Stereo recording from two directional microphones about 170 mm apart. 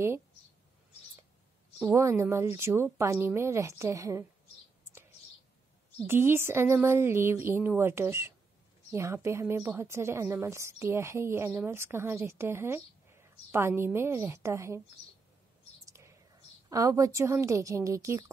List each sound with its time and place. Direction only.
2.0 s a woman's voice: 15° right (ahead or behind)
6.0 s a woman's voice: 15° right (ahead or behind)
15.8 s whispering: 15° right (ahead or behind)
16.6 s a woman's voice: 20° right (ahead or behind)